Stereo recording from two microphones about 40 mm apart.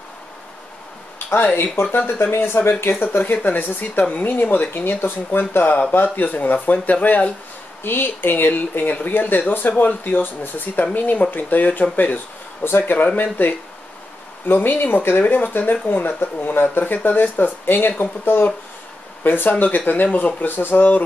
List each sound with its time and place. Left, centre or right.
1.6 s speech: left
2.3 s speech: left
5.5 s speech: left
7.8 s speech: left
12.6 s speech: left
19.6 s speech: left